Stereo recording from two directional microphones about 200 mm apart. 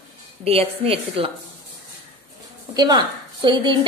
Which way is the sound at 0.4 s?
30° right (ahead or behind).